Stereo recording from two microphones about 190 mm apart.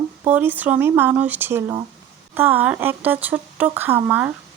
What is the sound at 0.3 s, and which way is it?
Speech, 10° right (ahead or behind).